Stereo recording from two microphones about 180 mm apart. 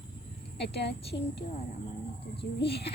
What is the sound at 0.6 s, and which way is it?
Speech, 70° left (ahead or behind).